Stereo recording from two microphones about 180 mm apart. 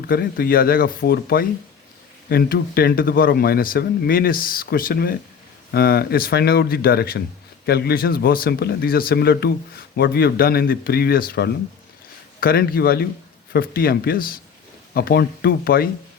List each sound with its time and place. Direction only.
0.1 s speech: 55° left (ahead or behind)